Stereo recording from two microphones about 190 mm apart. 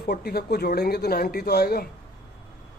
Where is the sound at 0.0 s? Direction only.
55° left (ahead or behind).